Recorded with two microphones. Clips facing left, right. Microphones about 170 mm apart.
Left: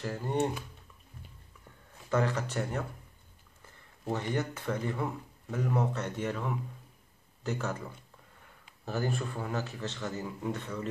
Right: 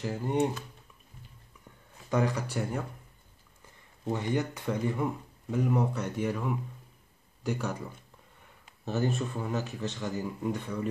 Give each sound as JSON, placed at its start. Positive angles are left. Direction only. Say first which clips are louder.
{"t": 0.0, "sound": "speech", "louder": "right 2 dB", "side_deg": -15}
{"t": 2.0, "sound": "speech", "louder": "right 1 dB", "side_deg": -15}
{"t": 8.8, "sound": "speech", "louder": "right 3 dB", "side_deg": -20}